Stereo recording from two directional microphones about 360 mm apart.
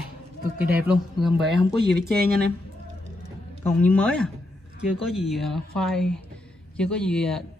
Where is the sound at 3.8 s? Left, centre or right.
Centre.